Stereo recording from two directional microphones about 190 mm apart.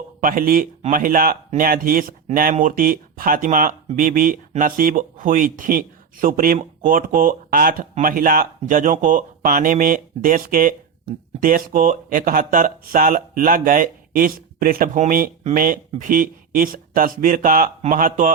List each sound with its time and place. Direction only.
0.2 s speech: 45° right (ahead or behind)